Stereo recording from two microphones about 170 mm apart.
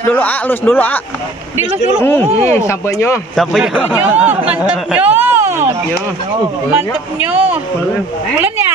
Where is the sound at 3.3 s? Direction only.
Centre (ahead or behind).